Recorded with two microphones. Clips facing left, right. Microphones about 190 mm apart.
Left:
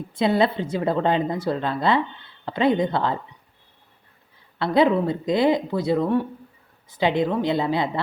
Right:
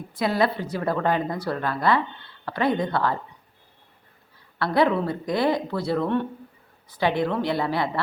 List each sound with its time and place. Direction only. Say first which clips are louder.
0.2 s speech: left 3 dB; 25° left (ahead or behind)
4.6 s speech: left 3 dB; 20° left (ahead or behind)